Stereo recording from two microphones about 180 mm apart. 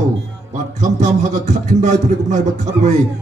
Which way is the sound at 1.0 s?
40° right (ahead or behind).